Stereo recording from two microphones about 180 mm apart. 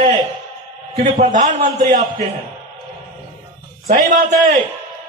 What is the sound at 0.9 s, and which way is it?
Speech, 40° right (ahead or behind).